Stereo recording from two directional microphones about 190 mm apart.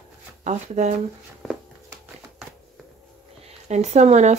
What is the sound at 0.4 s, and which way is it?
Speech, 40° right (ahead or behind).